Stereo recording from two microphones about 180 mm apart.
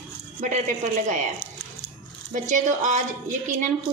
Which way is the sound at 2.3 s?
45° right (ahead or behind).